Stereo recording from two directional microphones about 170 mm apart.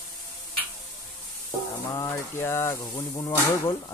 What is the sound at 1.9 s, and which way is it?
Speech, 15° left (ahead or behind).